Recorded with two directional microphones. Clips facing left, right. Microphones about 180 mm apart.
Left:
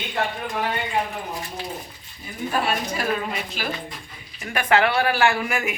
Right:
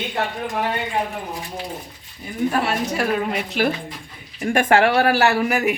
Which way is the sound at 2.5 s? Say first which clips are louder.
Even; 70° right (ahead or behind).